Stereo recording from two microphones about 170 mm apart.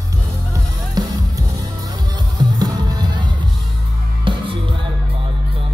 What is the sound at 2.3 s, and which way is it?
Music, 25° right (ahead or behind).